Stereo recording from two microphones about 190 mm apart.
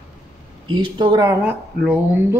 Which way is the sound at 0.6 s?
25° right (ahead or behind).